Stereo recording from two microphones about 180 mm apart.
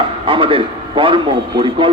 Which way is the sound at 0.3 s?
30° right (ahead or behind).